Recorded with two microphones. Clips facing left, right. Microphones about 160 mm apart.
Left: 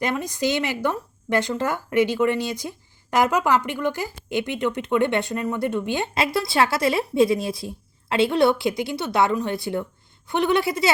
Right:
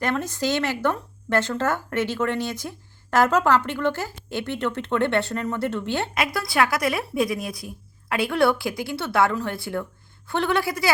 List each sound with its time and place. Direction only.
0.0 s speech: 15° left (ahead or behind)
6.1 s a woman's voice: 25° left (ahead or behind)